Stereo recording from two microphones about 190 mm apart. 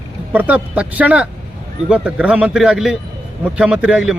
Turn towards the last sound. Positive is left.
turn(degrees=-5)  # may be behind; listen again after turning